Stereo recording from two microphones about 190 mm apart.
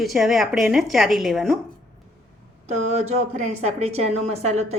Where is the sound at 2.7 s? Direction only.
35° right (ahead or behind).